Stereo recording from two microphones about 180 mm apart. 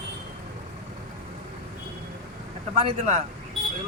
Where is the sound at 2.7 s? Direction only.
35° right (ahead or behind).